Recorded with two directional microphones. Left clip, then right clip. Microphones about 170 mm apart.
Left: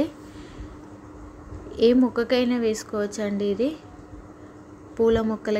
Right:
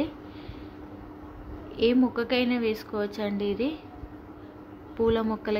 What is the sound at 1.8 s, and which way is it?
A woman's voice, 25° left (ahead or behind).